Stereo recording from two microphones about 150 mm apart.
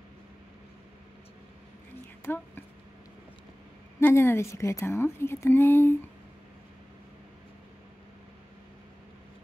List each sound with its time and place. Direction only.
2.2 s speech: 15° left (ahead or behind)
4.0 s a woman's voice: 15° left (ahead or behind)